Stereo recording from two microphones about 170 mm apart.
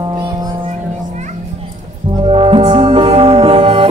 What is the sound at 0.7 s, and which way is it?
Children playing, 45° right (ahead or behind).